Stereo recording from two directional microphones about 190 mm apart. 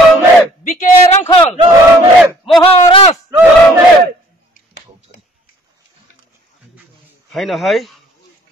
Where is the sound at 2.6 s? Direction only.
30° left (ahead or behind).